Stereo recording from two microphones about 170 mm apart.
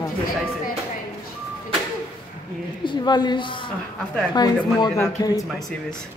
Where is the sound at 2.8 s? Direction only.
25° left (ahead or behind).